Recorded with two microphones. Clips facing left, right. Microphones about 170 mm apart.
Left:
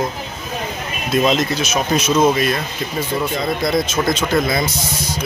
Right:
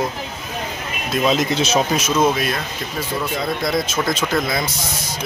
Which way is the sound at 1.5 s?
25° right (ahead or behind).